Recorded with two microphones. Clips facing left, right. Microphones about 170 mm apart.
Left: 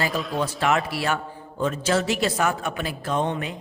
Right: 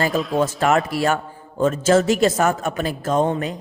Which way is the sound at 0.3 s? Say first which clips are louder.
Right 5 dB; 45° right (ahead or behind).